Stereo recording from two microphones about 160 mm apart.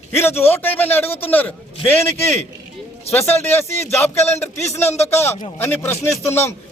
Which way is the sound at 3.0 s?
40° left (ahead or behind).